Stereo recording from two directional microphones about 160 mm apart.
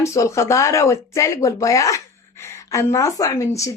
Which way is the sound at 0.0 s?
20° left (ahead or behind).